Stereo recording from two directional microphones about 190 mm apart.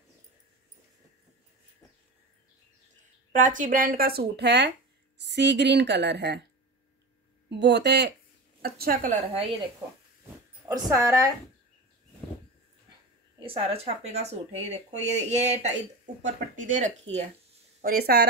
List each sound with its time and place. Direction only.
3.3 s a woman's voice: 45° right (ahead or behind); by 6.4 s 60° right (ahead or behind)
7.4 s a woman's voice: 65° right (ahead or behind); by 9.4 s 40° right (ahead or behind)
10.7 s a woman's voice: 15° right (ahead or behind)
13.5 s speech: 30° right (ahead or behind)
17.8 s speech: 55° right (ahead or behind)